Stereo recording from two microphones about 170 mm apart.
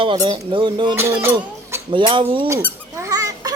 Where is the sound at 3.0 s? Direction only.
20° right (ahead or behind).